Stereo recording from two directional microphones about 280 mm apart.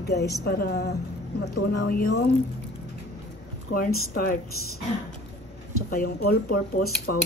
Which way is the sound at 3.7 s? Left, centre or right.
Left.